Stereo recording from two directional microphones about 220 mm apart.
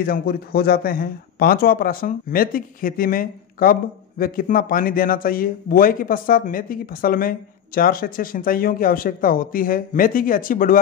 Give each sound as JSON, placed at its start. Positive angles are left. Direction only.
{"t": 0.0, "sound": "speech", "side_deg": 40}